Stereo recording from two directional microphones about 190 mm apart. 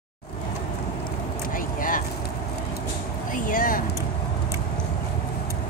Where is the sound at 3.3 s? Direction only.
45° left (ahead or behind).